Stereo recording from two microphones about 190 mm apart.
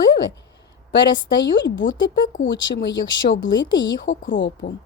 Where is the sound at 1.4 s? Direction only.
70° left (ahead or behind).